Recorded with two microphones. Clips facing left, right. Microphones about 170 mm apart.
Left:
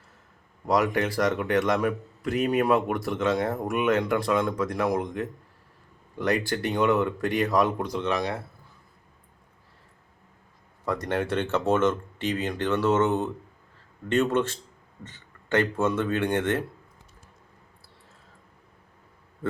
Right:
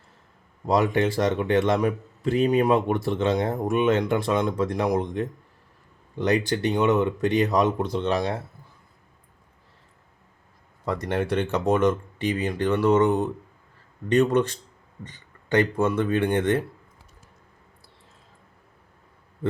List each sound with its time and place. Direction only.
0.7 s speech: 25° right (ahead or behind)
10.8 s speech: 10° right (ahead or behind)